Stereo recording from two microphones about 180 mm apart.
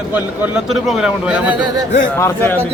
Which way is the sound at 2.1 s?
15° left (ahead or behind).